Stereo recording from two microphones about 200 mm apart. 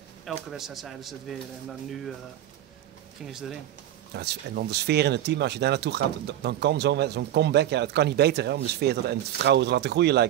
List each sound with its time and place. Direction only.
0.5 s speech: centre (ahead or behind)
3.3 s speech: centre (ahead or behind)
4.1 s speech: 55° right (ahead or behind)